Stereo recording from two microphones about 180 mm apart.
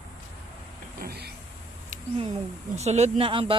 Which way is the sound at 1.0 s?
60° right (ahead or behind).